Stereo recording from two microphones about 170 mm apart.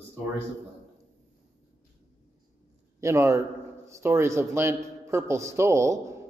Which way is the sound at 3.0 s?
15° right (ahead or behind).